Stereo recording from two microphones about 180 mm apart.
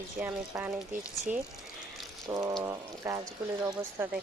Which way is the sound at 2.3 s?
20° right (ahead or behind).